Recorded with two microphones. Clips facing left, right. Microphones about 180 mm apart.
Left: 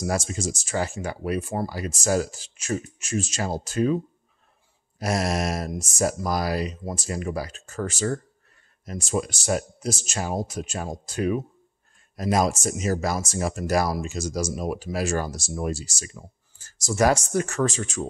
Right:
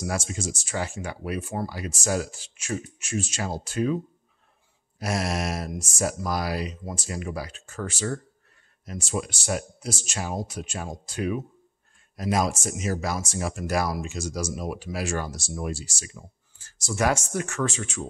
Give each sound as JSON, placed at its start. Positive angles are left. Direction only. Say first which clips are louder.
{"t": 0.0, "sound": "speech", "louder": "left 3 dB", "side_deg": 40}